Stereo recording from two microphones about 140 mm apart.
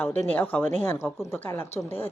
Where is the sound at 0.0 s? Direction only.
10° left (ahead or behind).